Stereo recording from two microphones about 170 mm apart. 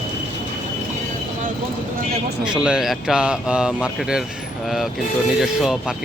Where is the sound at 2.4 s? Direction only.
5° right (ahead or behind).